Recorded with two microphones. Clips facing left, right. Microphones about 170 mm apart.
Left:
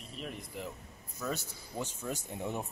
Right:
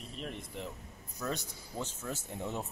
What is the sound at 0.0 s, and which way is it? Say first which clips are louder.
Speech: right 1 dB; centre (ahead or behind).